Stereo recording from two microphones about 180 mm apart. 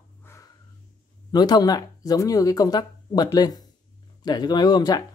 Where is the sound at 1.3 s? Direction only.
20° left (ahead or behind).